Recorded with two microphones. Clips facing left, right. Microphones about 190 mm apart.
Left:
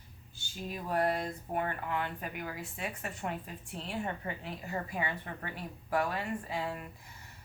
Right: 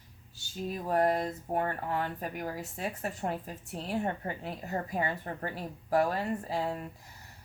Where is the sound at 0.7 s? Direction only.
40° right (ahead or behind).